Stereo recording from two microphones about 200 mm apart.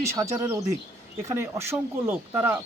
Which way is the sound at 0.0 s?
15° right (ahead or behind).